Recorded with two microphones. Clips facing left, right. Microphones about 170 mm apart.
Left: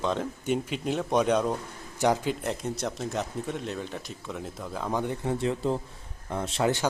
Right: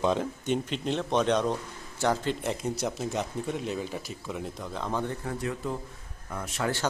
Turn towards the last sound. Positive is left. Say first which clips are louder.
# left 4 dB
turn(degrees=25)  # may be behind; listen again after turning